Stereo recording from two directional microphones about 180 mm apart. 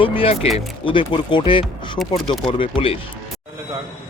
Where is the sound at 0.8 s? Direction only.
25° left (ahead or behind).